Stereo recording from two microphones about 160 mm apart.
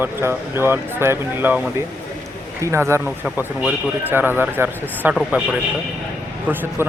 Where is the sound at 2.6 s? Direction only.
15° right (ahead or behind).